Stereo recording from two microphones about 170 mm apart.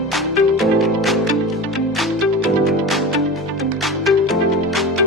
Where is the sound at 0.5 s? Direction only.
Centre (ahead or behind).